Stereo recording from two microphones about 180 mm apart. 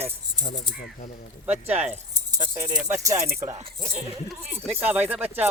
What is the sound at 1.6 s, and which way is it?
Speech, 35° right (ahead or behind).